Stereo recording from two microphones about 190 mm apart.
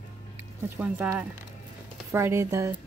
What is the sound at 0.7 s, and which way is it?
Speech, 10° right (ahead or behind).